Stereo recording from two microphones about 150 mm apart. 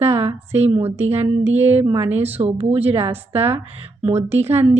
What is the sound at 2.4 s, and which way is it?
Speech, 45° right (ahead or behind).